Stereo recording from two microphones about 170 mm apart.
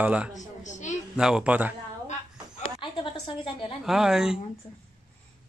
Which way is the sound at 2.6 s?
35° left (ahead or behind).